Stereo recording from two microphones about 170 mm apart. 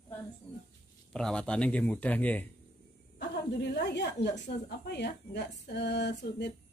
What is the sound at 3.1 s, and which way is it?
Speech, 85° left.